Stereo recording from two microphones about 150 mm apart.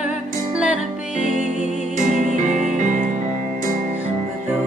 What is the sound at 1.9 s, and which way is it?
Music, 55° right (ahead or behind).